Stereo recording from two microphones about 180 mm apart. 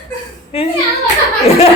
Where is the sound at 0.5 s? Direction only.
35° left (ahead or behind).